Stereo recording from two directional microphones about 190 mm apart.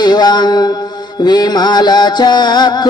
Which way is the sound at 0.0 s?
20° left (ahead or behind).